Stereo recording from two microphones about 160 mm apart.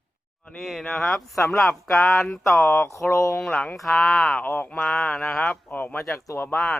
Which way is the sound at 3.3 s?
5° left (ahead or behind).